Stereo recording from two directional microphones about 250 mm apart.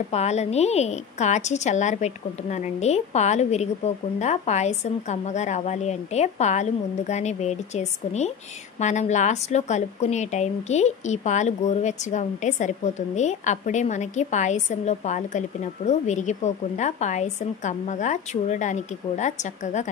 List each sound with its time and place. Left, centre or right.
0.1 s a woman's voice: left